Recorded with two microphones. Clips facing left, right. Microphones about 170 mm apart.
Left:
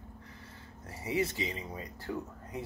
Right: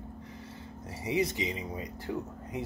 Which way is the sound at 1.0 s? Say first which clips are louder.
Right 2 dB; 20° right (ahead or behind).